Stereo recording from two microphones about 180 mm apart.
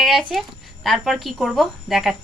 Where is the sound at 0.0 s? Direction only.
Centre (ahead or behind).